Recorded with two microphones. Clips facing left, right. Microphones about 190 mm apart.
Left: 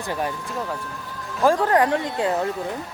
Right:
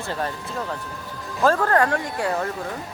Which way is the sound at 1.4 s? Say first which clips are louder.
Left 1 dB; 15° left (ahead or behind).